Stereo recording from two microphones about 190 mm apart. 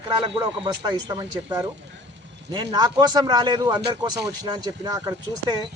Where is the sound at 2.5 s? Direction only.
20° right (ahead or behind).